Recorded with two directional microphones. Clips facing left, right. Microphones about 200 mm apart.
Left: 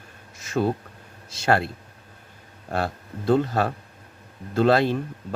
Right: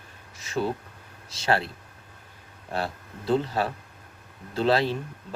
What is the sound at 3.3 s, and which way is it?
Speech, 50° left (ahead or behind).